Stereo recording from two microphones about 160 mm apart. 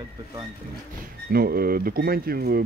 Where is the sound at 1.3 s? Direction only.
70° right (ahead or behind).